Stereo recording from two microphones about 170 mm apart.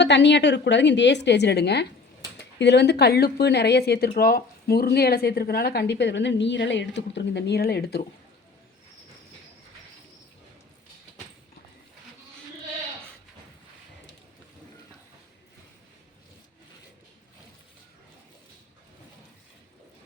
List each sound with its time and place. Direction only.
0.0 s a woman's voice: 90° left; by 1.9 s 75° left (ahead or behind)
2.6 s speech: 90° left; by 8.0 s 70° left (ahead or behind)